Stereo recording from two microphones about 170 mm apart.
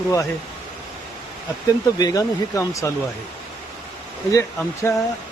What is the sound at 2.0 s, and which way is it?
Speech, 20° left (ahead or behind).